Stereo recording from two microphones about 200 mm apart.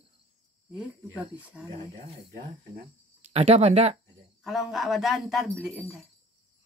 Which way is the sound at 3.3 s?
30° right (ahead or behind).